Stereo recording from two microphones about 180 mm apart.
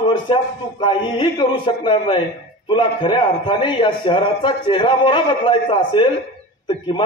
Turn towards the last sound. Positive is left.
turn(degrees=25)  # may be behind; listen again after turning